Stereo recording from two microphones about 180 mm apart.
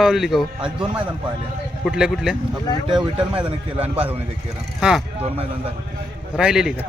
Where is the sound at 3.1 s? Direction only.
30° right (ahead or behind).